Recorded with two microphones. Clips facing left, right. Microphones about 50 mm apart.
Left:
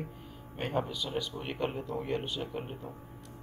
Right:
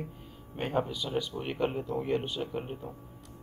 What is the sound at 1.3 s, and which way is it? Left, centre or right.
Speech, centre.